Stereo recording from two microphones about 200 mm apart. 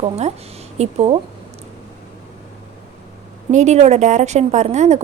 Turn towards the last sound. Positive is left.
turn(degrees=-35)  # may be behind; listen again after turning